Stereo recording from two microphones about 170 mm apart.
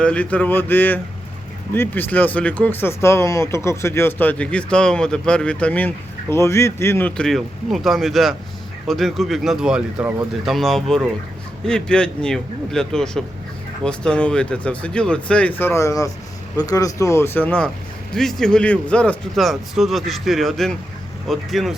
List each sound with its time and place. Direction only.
0.0 s speech: 5° left (ahead or behind)